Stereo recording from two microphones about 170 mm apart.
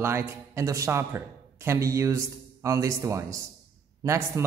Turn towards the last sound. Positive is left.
turn(degrees=-15)  # may be behind; listen again after turning